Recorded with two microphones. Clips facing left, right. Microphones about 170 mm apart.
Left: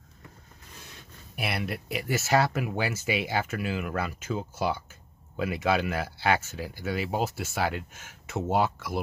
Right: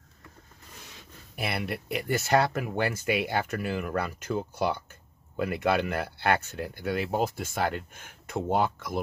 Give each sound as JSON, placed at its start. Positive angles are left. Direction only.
{"t": 1.3, "sound": "speech", "side_deg": 5}